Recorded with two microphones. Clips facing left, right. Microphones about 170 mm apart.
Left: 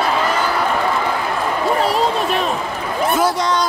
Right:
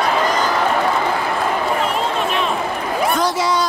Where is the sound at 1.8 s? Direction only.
35° left (ahead or behind).